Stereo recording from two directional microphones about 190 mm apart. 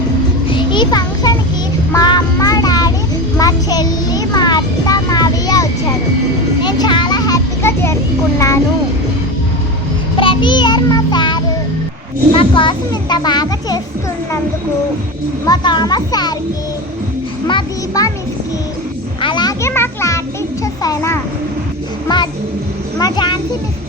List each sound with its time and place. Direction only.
0.5 s a sound: 25° left (ahead or behind)
1.9 s child singing: 20° left (ahead or behind)
6.6 s children playing: 25° left (ahead or behind)
8.4 s vehicle: 15° left (ahead or behind)
10.2 s child singing: 25° left (ahead or behind)
12.3 s a child's voice: 25° left (ahead or behind)
15.4 s a child's voice: 20° left (ahead or behind)
17.5 s a child's voice: 20° left (ahead or behind)
19.2 s music: 25° left (ahead or behind)
20.8 s vehicle: 15° left (ahead or behind)
22.1 s music: 25° left (ahead or behind)
23.0 s a sound: 20° left (ahead or behind)